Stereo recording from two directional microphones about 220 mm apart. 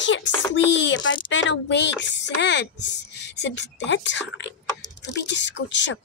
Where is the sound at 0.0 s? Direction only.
55° left (ahead or behind).